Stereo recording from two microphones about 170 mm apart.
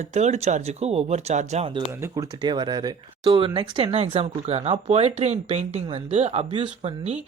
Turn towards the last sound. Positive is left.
turn(degrees=-35)  # may be behind; listen again after turning